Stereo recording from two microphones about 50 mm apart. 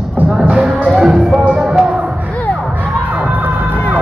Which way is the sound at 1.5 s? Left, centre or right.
Centre.